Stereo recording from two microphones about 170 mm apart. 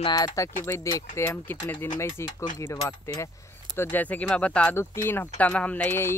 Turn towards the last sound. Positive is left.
turn(degrees=10)  # may be behind; listen again after turning